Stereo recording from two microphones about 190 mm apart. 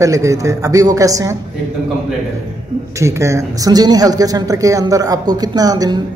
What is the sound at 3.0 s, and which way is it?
Speech, 15° right (ahead or behind).